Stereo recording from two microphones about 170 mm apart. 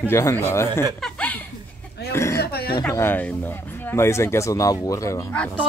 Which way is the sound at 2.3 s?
65° left (ahead or behind).